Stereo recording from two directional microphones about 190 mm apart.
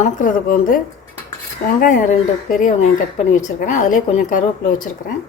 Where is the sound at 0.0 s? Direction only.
45° left (ahead or behind).